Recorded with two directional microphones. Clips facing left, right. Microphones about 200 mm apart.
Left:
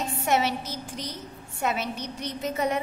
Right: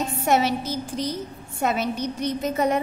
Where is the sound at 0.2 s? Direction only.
40° right (ahead or behind).